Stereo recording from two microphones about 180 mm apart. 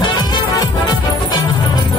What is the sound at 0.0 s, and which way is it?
Music, 25° left (ahead or behind).